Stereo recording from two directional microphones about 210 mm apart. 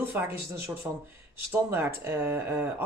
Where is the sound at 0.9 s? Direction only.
10° right (ahead or behind).